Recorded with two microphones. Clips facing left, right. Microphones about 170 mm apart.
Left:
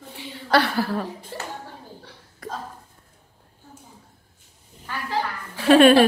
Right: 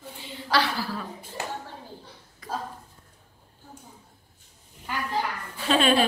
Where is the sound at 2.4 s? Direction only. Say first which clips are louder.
Even; 65° left (ahead or behind).